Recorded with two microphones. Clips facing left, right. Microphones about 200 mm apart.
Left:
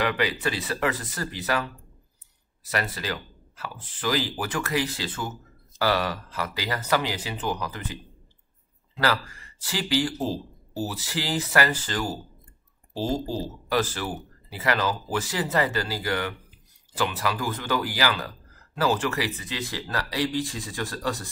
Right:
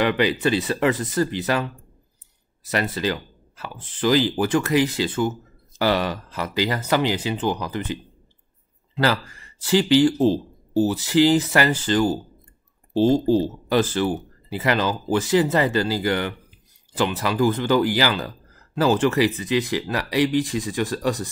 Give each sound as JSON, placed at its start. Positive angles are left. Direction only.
{"t": 0.0, "sound": "speech", "side_deg": -25}
{"t": 2.7, "sound": "speech", "side_deg": -25}